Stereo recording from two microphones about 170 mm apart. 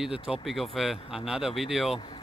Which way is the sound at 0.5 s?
Centre (ahead or behind).